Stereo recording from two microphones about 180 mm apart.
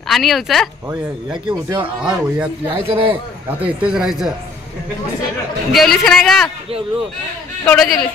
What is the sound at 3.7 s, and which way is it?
Speech, 5° right (ahead or behind).